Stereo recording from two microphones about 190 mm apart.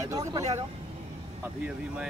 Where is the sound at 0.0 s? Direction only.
15° right (ahead or behind).